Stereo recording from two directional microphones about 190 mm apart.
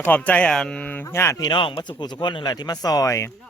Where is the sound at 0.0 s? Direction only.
10° left (ahead or behind).